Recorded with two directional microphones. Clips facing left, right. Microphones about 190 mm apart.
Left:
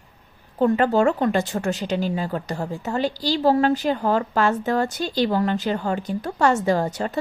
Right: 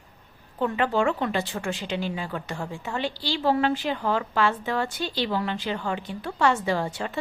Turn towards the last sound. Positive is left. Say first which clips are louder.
# left 5 dB
turn(degrees=40)  # may be behind; listen again after turning